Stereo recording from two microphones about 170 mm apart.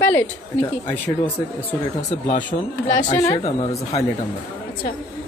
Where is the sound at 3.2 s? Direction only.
20° left (ahead or behind).